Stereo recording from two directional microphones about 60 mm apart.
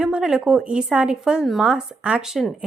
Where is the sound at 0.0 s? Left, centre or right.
Centre.